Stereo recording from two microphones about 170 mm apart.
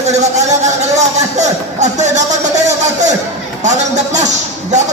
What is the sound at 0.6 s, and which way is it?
Speech, 40° right (ahead or behind).